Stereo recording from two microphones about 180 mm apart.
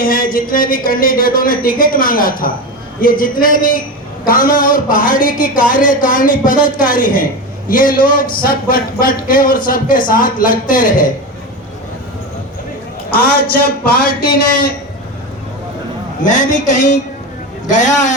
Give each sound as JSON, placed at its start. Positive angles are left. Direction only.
{"t": 0.0, "sound": "a man's voice", "side_deg": 50}
{"t": 13.1, "sound": "speech", "side_deg": 55}
{"t": 16.2, "sound": "a man's voice", "side_deg": 45}